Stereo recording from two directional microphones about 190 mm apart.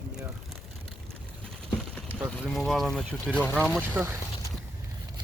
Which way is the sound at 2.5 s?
Centre (ahead or behind).